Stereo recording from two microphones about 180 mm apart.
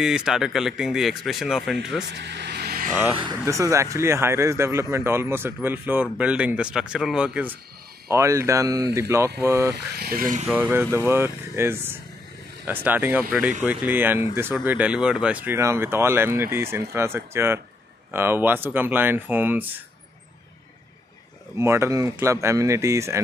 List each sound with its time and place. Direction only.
0.0 s speech: 5° right (ahead or behind)
2.1 s vehicle: 70° right (ahead or behind)
3.2 s speech: 20° right (ahead or behind)
9.9 s speech: 55° right (ahead or behind)
10.5 s speech: 10° right (ahead or behind)
21.5 s speech: 15° right (ahead or behind)